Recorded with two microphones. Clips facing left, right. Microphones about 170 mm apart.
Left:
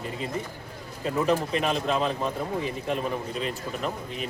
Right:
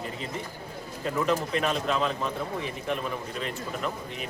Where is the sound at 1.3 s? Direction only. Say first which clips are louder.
Left 2 dB; 30° left (ahead or behind).